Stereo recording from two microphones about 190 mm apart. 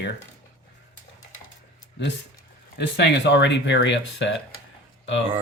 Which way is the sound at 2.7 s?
60° left (ahead or behind).